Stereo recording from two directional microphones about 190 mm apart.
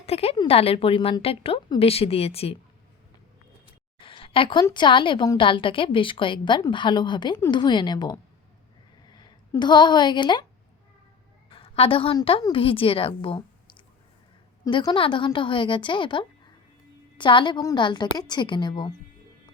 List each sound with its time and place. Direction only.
0.0 s a woman's voice: 30° left (ahead or behind)
3.9 s a sound: 30° left (ahead or behind)
4.6 s a woman's voice: 25° left (ahead or behind)
11.4 s a woman's voice: 30° left (ahead or behind)